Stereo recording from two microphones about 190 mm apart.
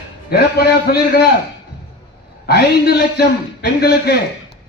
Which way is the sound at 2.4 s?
55° left (ahead or behind).